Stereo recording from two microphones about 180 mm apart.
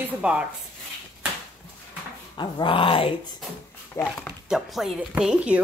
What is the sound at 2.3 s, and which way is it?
Dog, 25° left (ahead or behind).